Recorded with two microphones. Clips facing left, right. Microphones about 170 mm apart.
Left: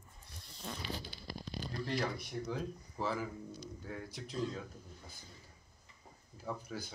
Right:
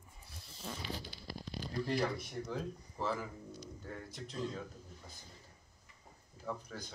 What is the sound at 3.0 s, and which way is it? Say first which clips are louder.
Speech: left 1 dB; centre (ahead or behind).